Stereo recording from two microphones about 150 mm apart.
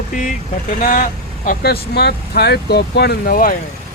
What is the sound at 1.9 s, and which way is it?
Speech, 90° left.